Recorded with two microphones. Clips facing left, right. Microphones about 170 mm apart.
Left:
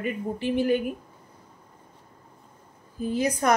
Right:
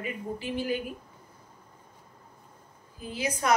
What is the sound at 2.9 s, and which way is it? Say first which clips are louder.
Speech: left 7 dB; 40° left (ahead or behind).